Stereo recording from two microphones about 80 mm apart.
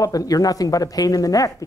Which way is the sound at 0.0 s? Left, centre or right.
Left.